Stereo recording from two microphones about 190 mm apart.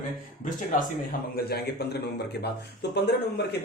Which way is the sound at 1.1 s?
55° left (ahead or behind).